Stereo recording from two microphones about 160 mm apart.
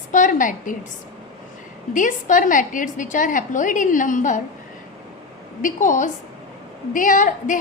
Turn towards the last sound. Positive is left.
turn(degrees=55)  # may be behind; listen again after turning